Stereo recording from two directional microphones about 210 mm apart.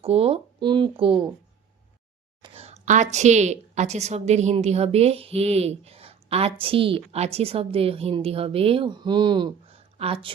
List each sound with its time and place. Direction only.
0.0 s speech: 30° right (ahead or behind)
2.4 s a woman's voice: 30° right (ahead or behind)